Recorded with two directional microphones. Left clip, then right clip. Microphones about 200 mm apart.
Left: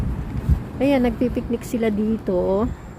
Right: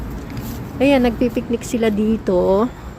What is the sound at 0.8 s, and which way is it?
Speech, 5° right (ahead or behind).